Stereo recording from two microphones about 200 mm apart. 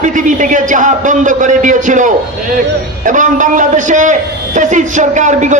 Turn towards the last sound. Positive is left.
turn(degrees=-35)  # may be behind; listen again after turning